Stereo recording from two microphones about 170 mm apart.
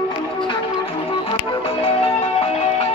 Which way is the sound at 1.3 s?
35° left (ahead or behind).